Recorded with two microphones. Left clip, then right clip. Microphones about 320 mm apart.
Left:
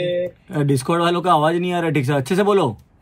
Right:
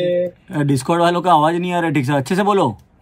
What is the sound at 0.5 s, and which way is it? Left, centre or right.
A man's voice, centre.